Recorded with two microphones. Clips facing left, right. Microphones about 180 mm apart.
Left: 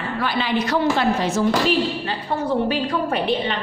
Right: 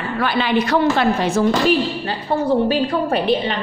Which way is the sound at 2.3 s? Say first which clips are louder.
Right 4 dB; 35° right (ahead or behind).